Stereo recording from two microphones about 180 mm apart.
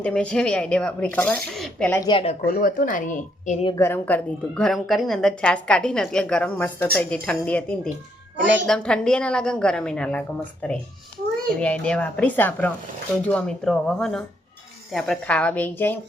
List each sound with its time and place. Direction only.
0.0 s a woman's voice: 5° left (ahead or behind)
2.0 s a woman's voice: 30° left (ahead or behind)
2.5 s speech: 50° left (ahead or behind)
3.8 s a woman's voice: 10° left (ahead or behind)
8.6 s a woman's voice: 5° left (ahead or behind)